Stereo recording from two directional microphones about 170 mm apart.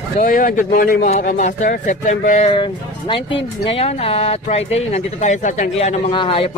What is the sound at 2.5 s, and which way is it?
Speech, 30° left (ahead or behind).